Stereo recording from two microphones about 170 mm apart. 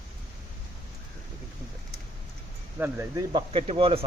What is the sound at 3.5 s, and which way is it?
Speech, 35° right (ahead or behind).